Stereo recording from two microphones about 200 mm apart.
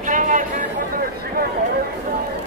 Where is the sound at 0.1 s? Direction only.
40° right (ahead or behind).